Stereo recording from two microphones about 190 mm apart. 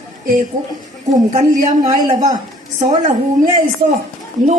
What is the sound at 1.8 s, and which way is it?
Speech, 20° right (ahead or behind).